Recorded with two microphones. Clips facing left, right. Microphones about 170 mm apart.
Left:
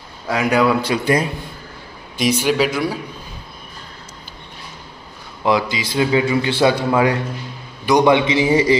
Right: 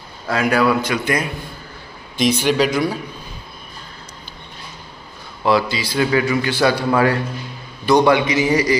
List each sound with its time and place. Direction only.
0.3 s a man's voice: 15° left (ahead or behind)
0.8 s a man's voice: 30° left (ahead or behind)
2.1 s speech: 10° left (ahead or behind)
5.4 s a man's voice: 15° left (ahead or behind)